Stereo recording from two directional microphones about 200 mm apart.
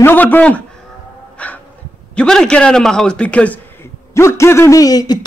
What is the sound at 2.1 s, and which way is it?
A man's voice, 5° left (ahead or behind).